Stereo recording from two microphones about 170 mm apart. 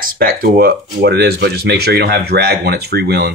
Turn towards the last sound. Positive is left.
turn(degrees=-70)  # may be behind; listen again after turning